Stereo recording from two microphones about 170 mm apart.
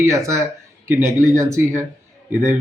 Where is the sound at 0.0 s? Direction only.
15° right (ahead or behind).